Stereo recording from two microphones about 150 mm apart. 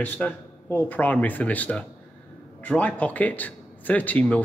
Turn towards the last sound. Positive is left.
turn(degrees=10)  # may be behind; listen again after turning